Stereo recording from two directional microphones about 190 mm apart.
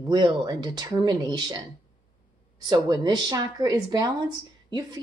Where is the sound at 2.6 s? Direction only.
20° right (ahead or behind).